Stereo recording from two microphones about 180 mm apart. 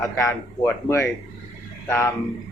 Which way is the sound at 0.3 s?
15° left (ahead or behind).